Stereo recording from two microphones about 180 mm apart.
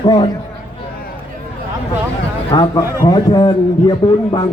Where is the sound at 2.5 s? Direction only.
25° left (ahead or behind).